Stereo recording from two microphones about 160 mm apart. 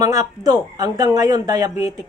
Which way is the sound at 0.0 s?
20° right (ahead or behind).